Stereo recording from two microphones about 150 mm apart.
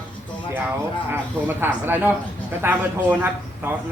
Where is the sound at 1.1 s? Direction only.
15° right (ahead or behind).